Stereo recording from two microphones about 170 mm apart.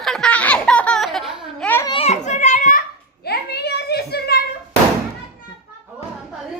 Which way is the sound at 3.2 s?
70° left (ahead or behind).